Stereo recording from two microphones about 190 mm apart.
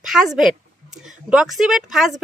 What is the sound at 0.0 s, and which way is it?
A woman's voice, centre (ahead or behind).